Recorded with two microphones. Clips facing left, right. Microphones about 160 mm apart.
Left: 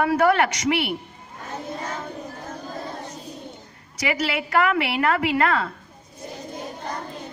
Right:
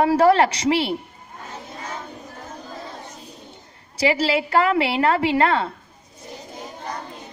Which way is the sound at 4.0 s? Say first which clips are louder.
Right 5 dB; 30° right (ahead or behind).